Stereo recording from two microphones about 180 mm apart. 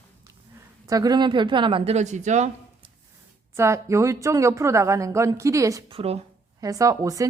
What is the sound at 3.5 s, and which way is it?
Speech, 15° right (ahead or behind).